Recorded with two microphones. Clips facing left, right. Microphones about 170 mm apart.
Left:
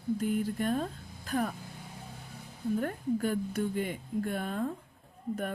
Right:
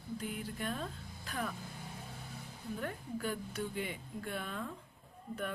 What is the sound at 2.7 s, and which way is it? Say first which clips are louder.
Speech: left 9 dB; 45° left (ahead or behind).